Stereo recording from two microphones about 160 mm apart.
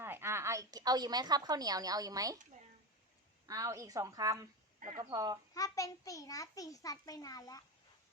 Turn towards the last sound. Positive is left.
turn(degrees=20)  # may be behind; listen again after turning